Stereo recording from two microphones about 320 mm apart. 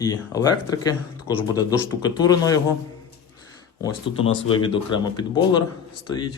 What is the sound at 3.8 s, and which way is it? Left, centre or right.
Speech, centre.